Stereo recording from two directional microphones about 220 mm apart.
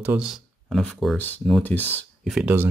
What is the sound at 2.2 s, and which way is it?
Speech, 5° right (ahead or behind).